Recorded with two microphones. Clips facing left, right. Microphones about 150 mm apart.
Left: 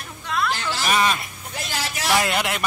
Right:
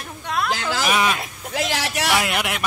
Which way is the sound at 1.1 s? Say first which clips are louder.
Right 6 dB; 90° right.